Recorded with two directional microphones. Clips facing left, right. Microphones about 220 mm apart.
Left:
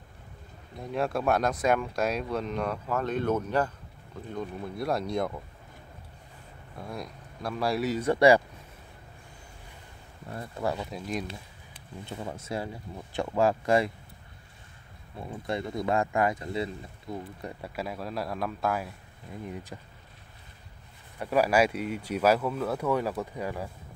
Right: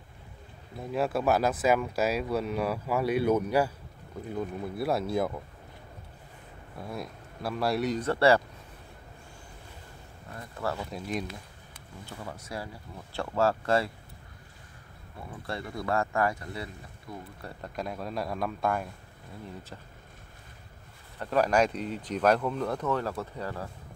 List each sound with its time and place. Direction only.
0.7 s speech: 5° right (ahead or behind)
6.8 s speech: 5° right (ahead or behind); by 8.4 s 15° left (ahead or behind)
10.6 s speech: 15° left (ahead or behind)
10.9 s speech: centre (ahead or behind)
12.1 s speech: 25° left (ahead or behind)
15.4 s speech: 20° left (ahead or behind); by 18.9 s centre (ahead or behind)
19.4 s speech: 15° left (ahead or behind)
21.2 s speech: 10° left (ahead or behind)